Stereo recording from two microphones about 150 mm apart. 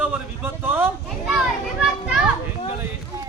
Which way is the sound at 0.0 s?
15° right (ahead or behind).